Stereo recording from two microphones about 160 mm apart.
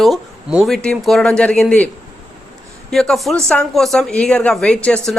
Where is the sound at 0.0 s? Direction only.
Centre (ahead or behind).